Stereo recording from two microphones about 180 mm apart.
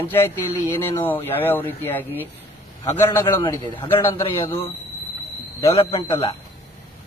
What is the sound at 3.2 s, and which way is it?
Speech, 25° left (ahead or behind).